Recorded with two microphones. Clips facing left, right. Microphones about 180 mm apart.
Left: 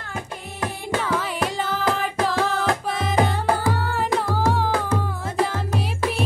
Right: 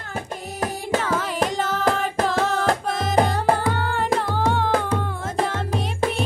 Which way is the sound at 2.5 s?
40° right (ahead or behind).